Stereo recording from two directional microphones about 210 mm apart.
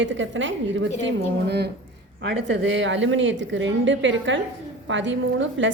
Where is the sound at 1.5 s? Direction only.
50° right (ahead or behind).